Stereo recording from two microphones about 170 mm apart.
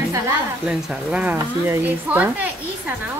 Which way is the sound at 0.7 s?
5° right (ahead or behind).